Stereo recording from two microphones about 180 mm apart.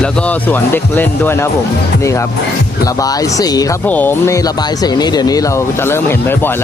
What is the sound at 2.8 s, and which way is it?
Speech, 20° left (ahead or behind).